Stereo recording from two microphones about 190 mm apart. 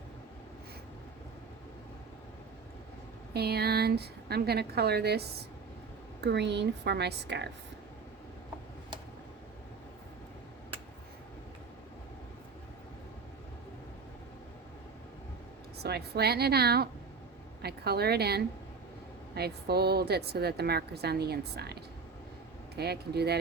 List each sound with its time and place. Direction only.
3.3 s a woman's voice: 55° right (ahead or behind)
15.8 s a woman's voice: 55° right (ahead or behind)